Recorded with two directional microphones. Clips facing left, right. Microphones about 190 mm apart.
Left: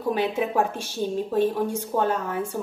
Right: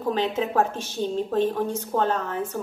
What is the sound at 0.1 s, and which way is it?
A woman's voice, 10° left (ahead or behind).